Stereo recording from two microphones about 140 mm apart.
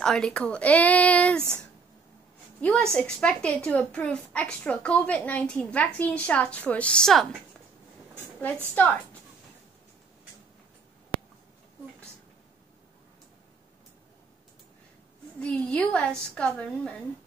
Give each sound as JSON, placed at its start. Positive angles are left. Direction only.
{"t": 0.0, "sound": "a child's voice", "side_deg": 5}
{"t": 1.4, "sound": "speech", "side_deg": -15}
{"t": 2.6, "sound": "a child's voice", "side_deg": 5}
{"t": 15.4, "sound": "a child's voice", "side_deg": 10}